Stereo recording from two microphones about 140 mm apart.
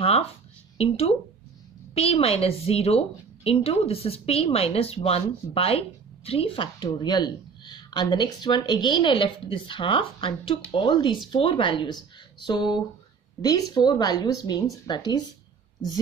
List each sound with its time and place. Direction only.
0.7 s a woman's voice: 45° left (ahead or behind)